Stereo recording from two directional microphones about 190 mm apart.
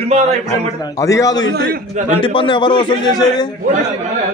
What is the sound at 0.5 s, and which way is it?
A man's voice, 15° left (ahead or behind).